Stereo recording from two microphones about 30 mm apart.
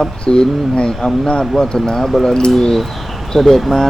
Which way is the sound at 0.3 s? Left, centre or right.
Left.